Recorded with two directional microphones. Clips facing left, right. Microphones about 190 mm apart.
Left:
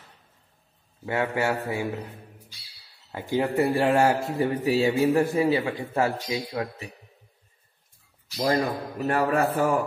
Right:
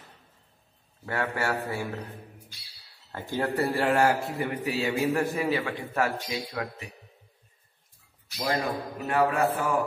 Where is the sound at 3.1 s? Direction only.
15° left (ahead or behind).